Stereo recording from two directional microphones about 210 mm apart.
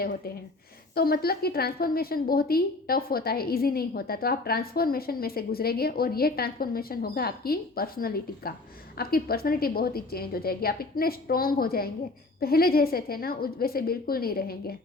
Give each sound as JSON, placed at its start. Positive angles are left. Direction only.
{"t": 0.9, "sound": "a woman's voice", "side_deg": 45}